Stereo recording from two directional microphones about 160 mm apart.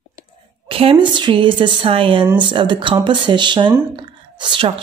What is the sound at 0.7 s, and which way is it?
A woman's voice, 35° right (ahead or behind).